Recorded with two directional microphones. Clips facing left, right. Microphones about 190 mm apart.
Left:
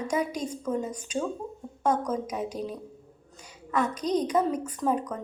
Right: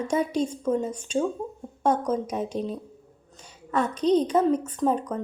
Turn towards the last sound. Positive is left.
turn(degrees=-30)  # may be behind; listen again after turning